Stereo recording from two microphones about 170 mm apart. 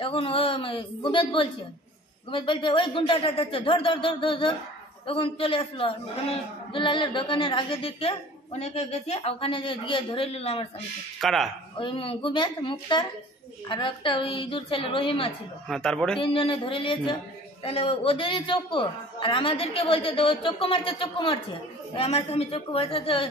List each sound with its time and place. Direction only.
0.0 s a man's voice: 30° left (ahead or behind)
11.1 s speech: centre (ahead or behind)
11.7 s a man's voice: 30° left (ahead or behind)
15.7 s speech: 5° left (ahead or behind)
16.2 s a man's voice: 30° left (ahead or behind)